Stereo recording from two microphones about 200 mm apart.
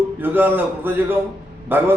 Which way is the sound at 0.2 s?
10° right (ahead or behind).